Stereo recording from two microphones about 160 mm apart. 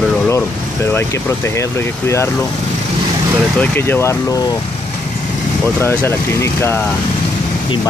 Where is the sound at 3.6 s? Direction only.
10° left (ahead or behind).